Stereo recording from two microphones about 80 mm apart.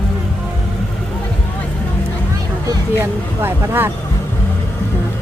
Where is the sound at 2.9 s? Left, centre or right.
Right.